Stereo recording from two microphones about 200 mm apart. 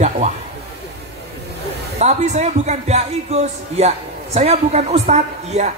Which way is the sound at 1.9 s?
35° right (ahead or behind).